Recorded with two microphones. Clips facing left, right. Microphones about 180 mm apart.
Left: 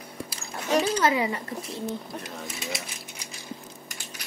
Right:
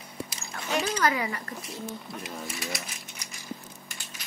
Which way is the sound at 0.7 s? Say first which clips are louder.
Left 4 dB; 35° left (ahead or behind).